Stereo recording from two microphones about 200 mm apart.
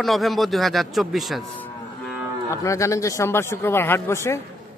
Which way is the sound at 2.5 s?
15° left (ahead or behind).